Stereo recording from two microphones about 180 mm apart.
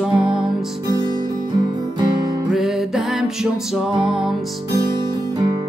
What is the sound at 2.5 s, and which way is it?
Music, centre (ahead or behind).